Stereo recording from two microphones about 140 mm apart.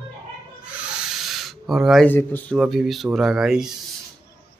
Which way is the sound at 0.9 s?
5° right (ahead or behind).